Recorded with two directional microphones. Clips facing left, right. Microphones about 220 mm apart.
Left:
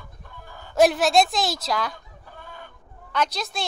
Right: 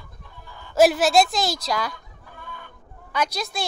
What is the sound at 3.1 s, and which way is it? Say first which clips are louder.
Speech: even; centre (ahead or behind).